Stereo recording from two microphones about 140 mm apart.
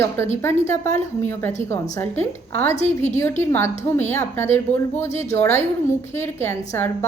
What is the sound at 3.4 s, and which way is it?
A woman's voice, 15° left (ahead or behind).